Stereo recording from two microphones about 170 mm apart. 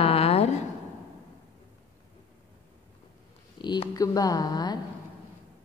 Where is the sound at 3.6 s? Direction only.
25° left (ahead or behind).